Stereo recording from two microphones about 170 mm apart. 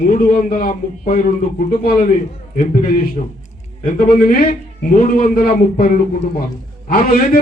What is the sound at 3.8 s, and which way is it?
A man's voice, 60° left (ahead or behind).